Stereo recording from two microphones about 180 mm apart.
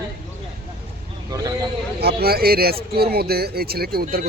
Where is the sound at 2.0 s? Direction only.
60° right (ahead or behind).